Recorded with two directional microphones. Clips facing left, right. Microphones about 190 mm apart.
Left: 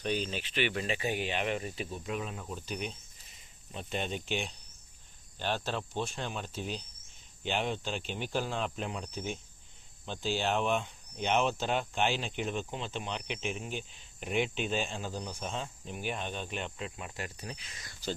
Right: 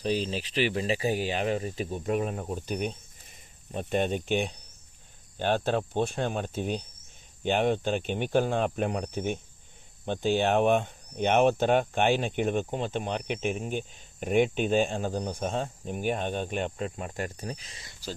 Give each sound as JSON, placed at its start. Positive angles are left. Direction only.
{"t": 0.0, "sound": "speech", "side_deg": -35}